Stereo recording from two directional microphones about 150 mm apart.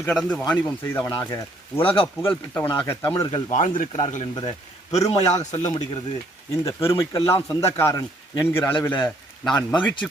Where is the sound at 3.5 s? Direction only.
60° left (ahead or behind).